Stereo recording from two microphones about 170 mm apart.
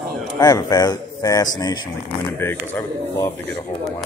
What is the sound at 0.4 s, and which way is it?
A man's voice, 20° left (ahead or behind).